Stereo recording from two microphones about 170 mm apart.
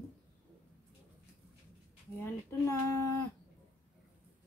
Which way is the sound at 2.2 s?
15° left (ahead or behind).